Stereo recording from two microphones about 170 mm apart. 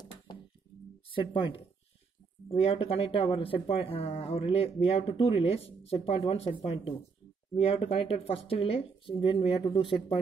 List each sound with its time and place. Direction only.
1.1 s speech: 30° left (ahead or behind)